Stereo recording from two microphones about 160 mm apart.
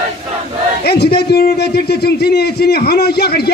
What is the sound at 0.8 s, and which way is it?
A man's voice, 90° left.